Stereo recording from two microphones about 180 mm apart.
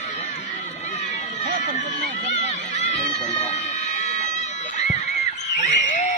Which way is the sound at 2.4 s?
40° left (ahead or behind).